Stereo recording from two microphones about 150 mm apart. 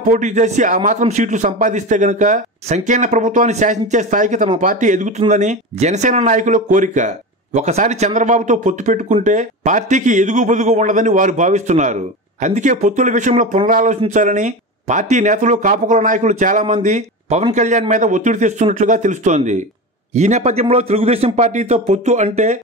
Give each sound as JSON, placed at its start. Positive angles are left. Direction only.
{"t": 0.0, "sound": "speech", "side_deg": -55}